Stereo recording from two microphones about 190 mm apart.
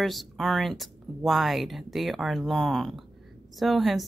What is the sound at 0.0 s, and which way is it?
A woman's voice, centre (ahead or behind).